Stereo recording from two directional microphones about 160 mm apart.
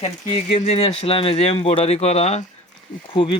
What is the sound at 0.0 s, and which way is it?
Speech, 40° left (ahead or behind).